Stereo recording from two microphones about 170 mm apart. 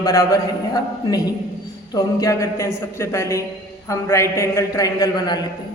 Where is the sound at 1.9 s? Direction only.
20° left (ahead or behind).